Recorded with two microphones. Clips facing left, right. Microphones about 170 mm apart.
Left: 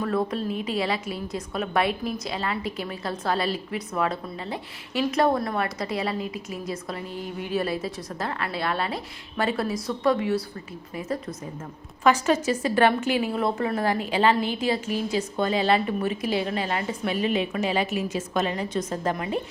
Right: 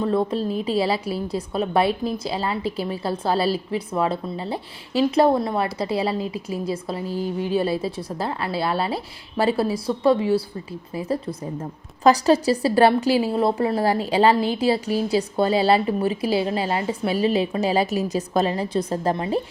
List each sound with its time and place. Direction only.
0.0 s a woman's voice: 25° right (ahead or behind)